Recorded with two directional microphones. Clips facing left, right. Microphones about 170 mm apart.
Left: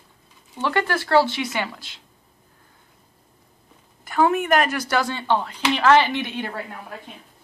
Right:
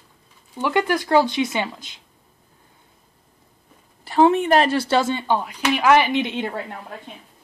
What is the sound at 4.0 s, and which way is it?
A woman's voice, 30° right (ahead or behind).